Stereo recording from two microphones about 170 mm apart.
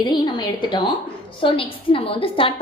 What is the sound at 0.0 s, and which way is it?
A woman's voice, 25° left (ahead or behind).